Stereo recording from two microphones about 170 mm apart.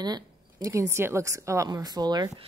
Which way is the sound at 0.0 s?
25° right (ahead or behind).